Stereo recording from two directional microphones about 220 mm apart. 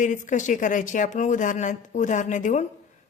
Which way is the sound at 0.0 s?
35° left (ahead or behind).